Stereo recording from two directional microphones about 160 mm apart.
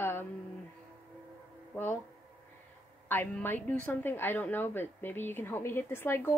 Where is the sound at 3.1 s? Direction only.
10° left (ahead or behind).